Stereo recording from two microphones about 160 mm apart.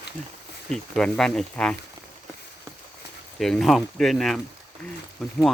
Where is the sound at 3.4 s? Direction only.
Centre (ahead or behind).